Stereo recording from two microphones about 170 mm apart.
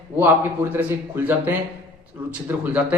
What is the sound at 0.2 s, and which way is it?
A man's voice, 10° right (ahead or behind).